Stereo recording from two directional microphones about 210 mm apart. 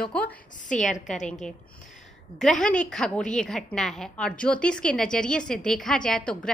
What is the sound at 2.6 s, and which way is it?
A woman's voice, 5° left (ahead or behind).